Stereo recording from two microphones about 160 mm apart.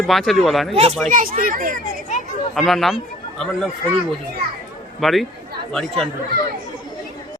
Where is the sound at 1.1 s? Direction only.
60° right (ahead or behind).